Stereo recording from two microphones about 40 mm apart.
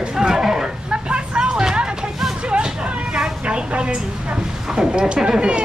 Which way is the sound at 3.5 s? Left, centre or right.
Right.